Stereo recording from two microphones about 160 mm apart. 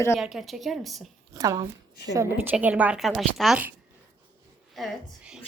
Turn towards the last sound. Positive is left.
turn(degrees=-5)  # may be behind; listen again after turning